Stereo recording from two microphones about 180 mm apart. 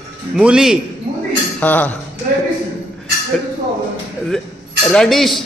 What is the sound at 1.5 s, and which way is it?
Speech, 10° left (ahead or behind).